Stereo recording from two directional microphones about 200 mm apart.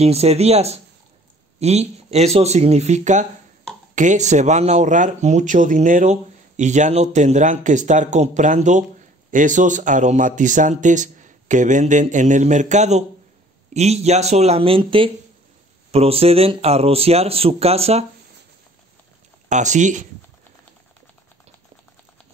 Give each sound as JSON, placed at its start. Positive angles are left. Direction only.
{"t": 0.0, "sound": "speech", "side_deg": -30}
{"t": 19.5, "sound": "speech", "side_deg": -35}